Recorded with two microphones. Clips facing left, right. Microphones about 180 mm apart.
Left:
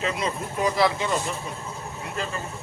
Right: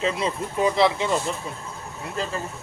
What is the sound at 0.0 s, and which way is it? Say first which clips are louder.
Speech: right 2 dB; 25° right (ahead or behind).